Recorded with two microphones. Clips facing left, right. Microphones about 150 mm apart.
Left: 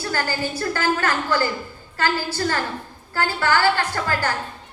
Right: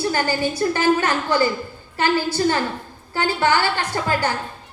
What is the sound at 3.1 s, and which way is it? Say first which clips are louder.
A woman's voice: right 2 dB; 15° right (ahead or behind).